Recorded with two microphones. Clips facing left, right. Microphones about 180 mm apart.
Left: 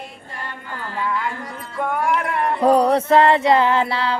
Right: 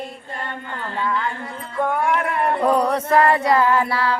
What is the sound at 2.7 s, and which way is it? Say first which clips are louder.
Music: left 6 dB; 30° left (ahead or behind).